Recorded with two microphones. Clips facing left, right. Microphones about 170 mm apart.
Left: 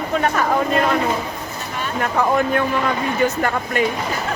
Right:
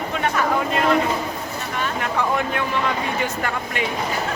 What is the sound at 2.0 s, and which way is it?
Speech, 45° left (ahead or behind).